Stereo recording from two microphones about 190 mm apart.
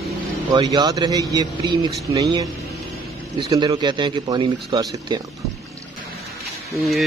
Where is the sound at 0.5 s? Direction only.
20° right (ahead or behind).